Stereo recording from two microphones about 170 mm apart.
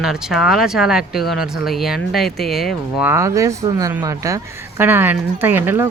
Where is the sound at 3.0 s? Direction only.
15° right (ahead or behind).